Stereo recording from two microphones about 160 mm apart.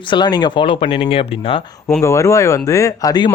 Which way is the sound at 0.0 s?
30° left (ahead or behind).